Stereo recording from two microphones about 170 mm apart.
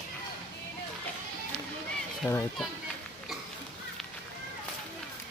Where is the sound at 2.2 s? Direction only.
5° right (ahead or behind).